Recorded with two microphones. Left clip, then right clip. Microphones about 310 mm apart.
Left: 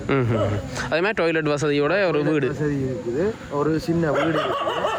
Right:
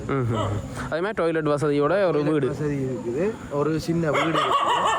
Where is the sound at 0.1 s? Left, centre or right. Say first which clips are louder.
Left 4 dB; centre.